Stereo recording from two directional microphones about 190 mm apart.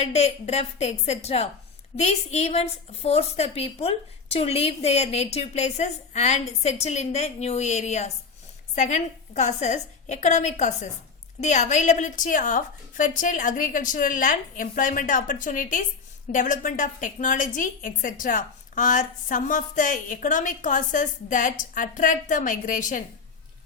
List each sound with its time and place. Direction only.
0.0 s a woman's voice: 35° left (ahead or behind)